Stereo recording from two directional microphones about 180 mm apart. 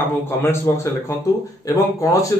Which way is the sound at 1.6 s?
20° left (ahead or behind).